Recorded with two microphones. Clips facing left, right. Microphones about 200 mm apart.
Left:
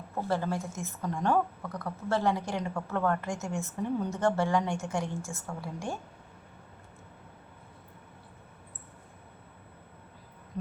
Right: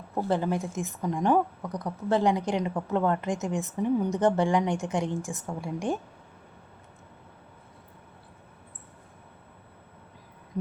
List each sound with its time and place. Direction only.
0.1 s a woman's voice: 20° right (ahead or behind)